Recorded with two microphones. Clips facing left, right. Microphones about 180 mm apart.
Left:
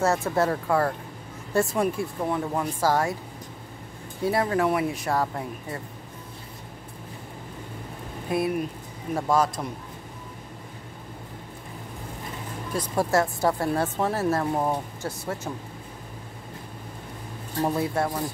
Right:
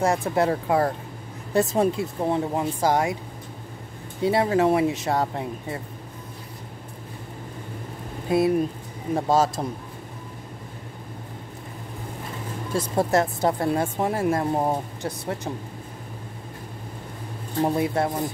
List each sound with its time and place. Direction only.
0.0 s speech: 15° right (ahead or behind)
4.2 s speech: 20° right (ahead or behind)
8.3 s speech: 25° right (ahead or behind)
12.7 s speech: 25° right (ahead or behind)
17.6 s speech: 20° right (ahead or behind)